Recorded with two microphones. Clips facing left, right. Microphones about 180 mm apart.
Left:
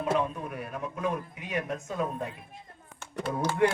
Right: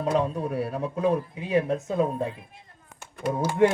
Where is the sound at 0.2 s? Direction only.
35° right (ahead or behind).